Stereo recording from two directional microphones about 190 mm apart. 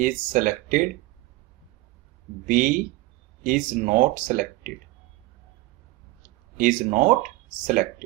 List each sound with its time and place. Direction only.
0.0 s speech: 45° right (ahead or behind)
2.5 s speech: 45° right (ahead or behind)
6.6 s speech: 45° right (ahead or behind)